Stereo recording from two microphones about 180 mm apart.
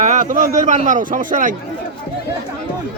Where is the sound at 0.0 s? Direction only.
45° right (ahead or behind).